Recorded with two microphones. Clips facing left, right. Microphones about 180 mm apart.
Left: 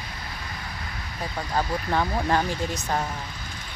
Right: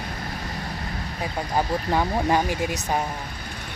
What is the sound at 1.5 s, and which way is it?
Speech, 15° right (ahead or behind).